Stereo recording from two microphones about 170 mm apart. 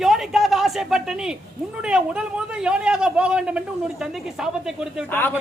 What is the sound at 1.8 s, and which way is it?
A man's voice, 5° right (ahead or behind).